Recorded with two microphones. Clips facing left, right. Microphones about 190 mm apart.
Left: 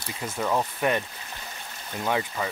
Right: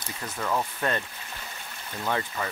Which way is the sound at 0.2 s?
15° left (ahead or behind).